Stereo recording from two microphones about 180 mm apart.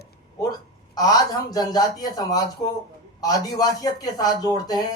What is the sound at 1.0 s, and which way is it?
Speech, 20° left (ahead or behind).